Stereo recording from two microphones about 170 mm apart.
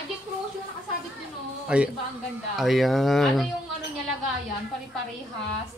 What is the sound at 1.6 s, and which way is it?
Speech, 5° right (ahead or behind).